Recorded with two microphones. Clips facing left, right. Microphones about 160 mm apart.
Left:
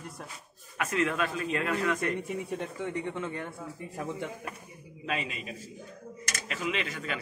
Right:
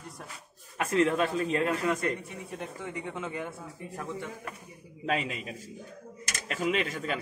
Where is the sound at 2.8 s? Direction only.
5° right (ahead or behind).